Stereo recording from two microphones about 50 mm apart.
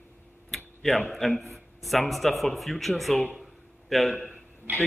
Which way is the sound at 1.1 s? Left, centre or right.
Centre.